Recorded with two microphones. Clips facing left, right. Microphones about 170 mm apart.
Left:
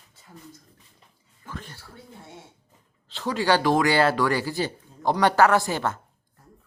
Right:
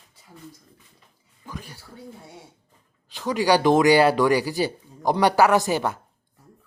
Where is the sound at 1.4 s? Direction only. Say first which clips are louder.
Right 1 dB; 10° right (ahead or behind).